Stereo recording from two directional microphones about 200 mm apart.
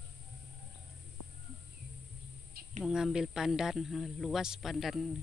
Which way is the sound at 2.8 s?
5° right (ahead or behind).